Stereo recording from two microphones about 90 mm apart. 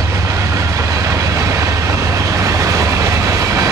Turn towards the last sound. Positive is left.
turn(degrees=-35)  # may be behind; listen again after turning